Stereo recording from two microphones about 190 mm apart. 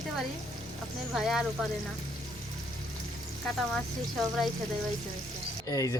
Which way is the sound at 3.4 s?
Centre (ahead or behind).